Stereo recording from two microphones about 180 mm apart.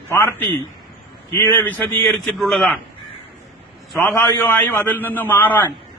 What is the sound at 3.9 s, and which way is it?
A man's voice, 5° left (ahead or behind).